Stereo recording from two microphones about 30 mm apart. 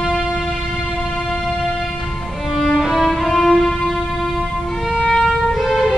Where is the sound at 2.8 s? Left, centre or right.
Centre.